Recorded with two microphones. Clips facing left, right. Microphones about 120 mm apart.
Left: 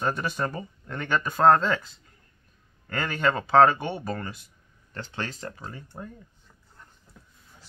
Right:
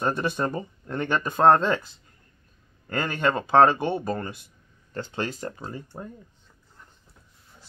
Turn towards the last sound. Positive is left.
turn(degrees=-35)  # may be behind; listen again after turning